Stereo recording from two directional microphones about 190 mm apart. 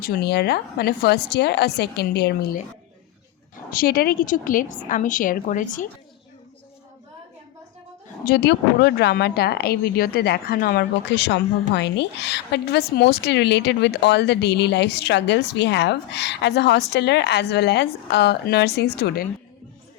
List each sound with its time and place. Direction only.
0.0 s a woman's voice: 60° left (ahead or behind)
3.7 s speech: 50° left (ahead or behind)
8.2 s a woman's voice: 55° left (ahead or behind)